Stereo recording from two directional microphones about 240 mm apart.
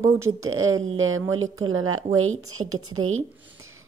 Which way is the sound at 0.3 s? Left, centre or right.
Right.